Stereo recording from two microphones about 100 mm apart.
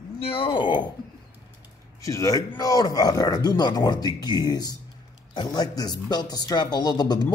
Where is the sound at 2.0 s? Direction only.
35° left (ahead or behind).